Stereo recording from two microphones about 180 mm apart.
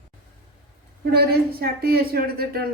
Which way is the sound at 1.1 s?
60° right (ahead or behind).